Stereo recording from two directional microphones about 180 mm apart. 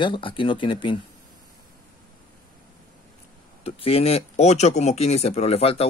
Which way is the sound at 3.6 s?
35° left (ahead or behind).